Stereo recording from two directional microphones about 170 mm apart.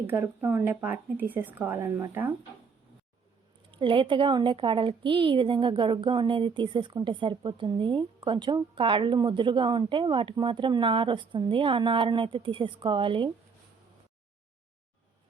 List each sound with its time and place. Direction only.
0.1 s a woman's voice: 15° right (ahead or behind)
3.7 s a woman's voice: 30° right (ahead or behind)